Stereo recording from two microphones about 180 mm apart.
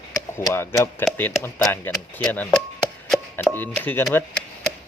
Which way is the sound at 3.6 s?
10° left (ahead or behind).